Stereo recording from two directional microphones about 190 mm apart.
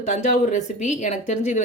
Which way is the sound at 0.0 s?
40° left (ahead or behind).